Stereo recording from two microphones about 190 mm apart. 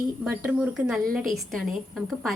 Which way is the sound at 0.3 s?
5° right (ahead or behind).